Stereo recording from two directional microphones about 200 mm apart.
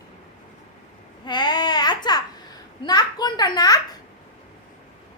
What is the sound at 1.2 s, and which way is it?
Baby cry, 20° left (ahead or behind).